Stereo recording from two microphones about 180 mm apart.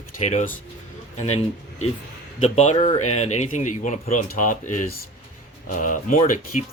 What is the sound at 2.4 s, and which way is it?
Speech, 35° left (ahead or behind).